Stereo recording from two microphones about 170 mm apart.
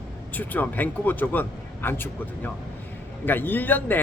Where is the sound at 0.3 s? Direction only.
10° left (ahead or behind).